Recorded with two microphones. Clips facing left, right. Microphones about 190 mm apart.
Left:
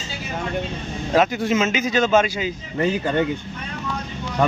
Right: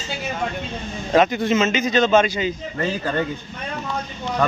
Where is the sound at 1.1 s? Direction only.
5° left (ahead or behind).